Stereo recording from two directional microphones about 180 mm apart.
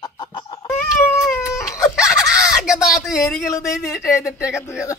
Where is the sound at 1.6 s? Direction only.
15° left (ahead or behind).